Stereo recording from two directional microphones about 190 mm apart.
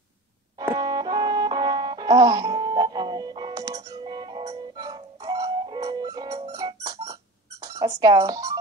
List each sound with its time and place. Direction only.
0.6 s music: 20° right (ahead or behind)
7.6 s speech: 20° right (ahead or behind)